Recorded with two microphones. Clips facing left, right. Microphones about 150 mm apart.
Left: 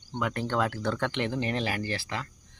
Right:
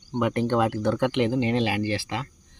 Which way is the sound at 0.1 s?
20° right (ahead or behind).